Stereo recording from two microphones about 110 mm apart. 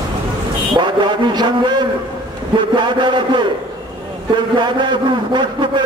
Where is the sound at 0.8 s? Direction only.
45° right (ahead or behind).